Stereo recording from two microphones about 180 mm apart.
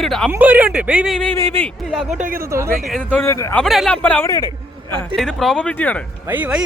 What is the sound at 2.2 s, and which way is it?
Speech, 55° right (ahead or behind).